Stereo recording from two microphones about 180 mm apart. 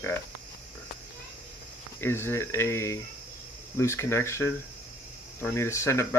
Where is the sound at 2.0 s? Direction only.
15° left (ahead or behind).